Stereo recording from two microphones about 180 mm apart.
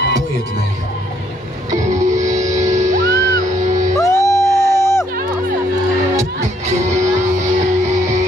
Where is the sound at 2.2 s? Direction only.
20° right (ahead or behind).